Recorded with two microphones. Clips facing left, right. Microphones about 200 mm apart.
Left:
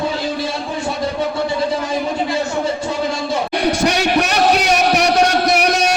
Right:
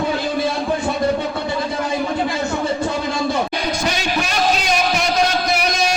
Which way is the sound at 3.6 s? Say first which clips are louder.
Left 6 dB; 65° left (ahead or behind).